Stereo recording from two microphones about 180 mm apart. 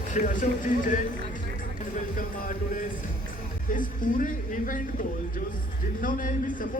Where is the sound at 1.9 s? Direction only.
45° left (ahead or behind).